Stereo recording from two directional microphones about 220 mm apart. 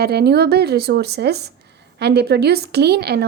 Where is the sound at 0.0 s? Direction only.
45° right (ahead or behind).